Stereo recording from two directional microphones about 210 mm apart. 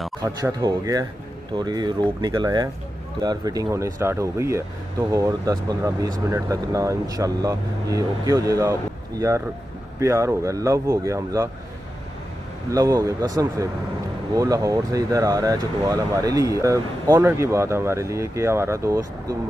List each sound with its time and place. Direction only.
0.2 s speech: 15° right (ahead or behind)
9.9 s speech: 15° right (ahead or behind)
12.7 s speech: 15° right (ahead or behind)